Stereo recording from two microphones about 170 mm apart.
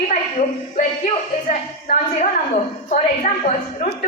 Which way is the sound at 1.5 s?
45° left (ahead or behind).